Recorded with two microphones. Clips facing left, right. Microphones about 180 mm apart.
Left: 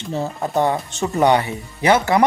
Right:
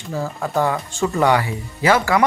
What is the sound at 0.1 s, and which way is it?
Speech, 20° left (ahead or behind).